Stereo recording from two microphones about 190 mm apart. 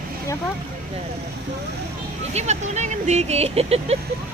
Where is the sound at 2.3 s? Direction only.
35° right (ahead or behind).